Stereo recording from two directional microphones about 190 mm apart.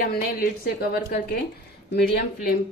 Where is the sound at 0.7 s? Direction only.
55° left (ahead or behind).